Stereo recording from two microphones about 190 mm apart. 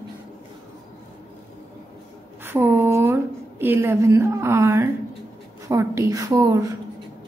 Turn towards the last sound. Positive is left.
turn(degrees=-15)  # may be behind; listen again after turning